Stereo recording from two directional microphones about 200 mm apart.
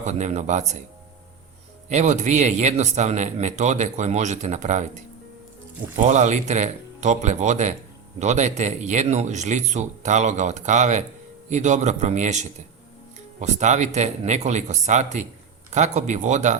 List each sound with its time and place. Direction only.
0.0 s a man's voice: 35° right (ahead or behind)
1.9 s a man's voice: 35° right (ahead or behind)
6.0 s a man's voice: 35° right (ahead or behind)